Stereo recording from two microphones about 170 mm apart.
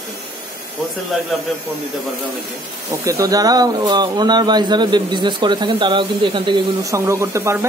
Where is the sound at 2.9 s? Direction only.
20° right (ahead or behind).